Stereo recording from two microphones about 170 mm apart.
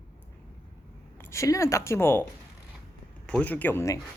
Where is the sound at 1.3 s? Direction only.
20° left (ahead or behind).